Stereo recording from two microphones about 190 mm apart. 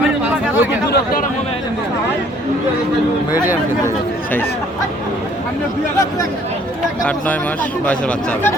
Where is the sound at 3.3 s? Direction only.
10° right (ahead or behind).